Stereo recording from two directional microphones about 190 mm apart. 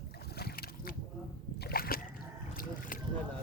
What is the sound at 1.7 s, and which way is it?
Splash, 50° left (ahead or behind).